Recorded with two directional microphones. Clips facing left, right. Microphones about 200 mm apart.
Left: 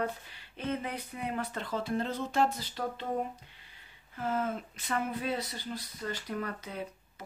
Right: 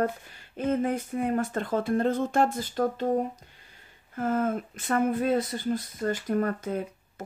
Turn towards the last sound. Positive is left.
turn(degrees=-50)  # may be behind; listen again after turning